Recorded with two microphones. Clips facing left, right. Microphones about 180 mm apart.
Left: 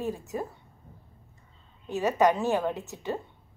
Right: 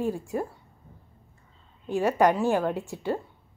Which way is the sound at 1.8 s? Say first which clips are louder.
Right 2 dB; 10° right (ahead or behind).